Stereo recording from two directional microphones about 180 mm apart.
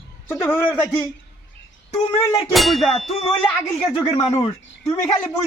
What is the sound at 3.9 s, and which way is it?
A man's voice, 30° left (ahead or behind).